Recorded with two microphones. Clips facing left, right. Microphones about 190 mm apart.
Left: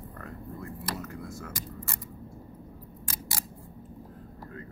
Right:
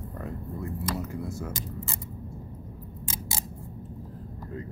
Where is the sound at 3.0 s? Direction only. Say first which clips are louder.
Right 3 dB; 25° right (ahead or behind).